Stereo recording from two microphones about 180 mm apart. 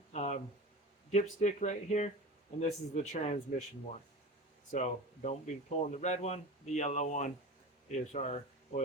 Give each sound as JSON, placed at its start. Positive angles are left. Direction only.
{"t": 0.1, "sound": "a sound", "side_deg": 40}
{"t": 1.1, "sound": "speech", "side_deg": 40}
{"t": 4.7, "sound": "speech", "side_deg": 40}